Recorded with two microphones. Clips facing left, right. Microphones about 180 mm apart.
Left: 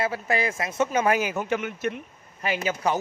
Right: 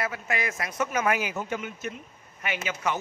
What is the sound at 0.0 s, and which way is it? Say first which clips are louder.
Speech: left 5 dB; 30° left (ahead or behind).